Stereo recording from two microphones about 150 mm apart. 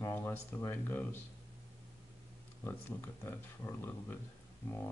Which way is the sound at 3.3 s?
15° left (ahead or behind).